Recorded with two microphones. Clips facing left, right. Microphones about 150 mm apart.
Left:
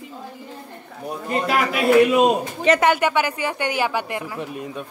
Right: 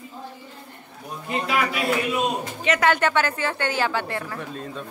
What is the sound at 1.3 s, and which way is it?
Speech, 45° left (ahead or behind).